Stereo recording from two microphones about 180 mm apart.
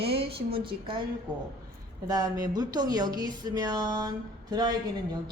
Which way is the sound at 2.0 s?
20° right (ahead or behind).